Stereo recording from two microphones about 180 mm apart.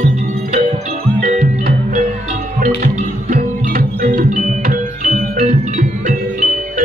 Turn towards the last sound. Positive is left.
turn(degrees=-45)  # may be behind; listen again after turning